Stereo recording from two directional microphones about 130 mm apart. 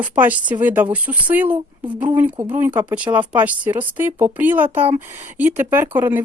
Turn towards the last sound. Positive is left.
turn(degrees=-15)  # may be behind; listen again after turning